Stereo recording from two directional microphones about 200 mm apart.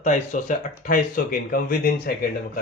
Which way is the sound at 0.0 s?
40° left (ahead or behind).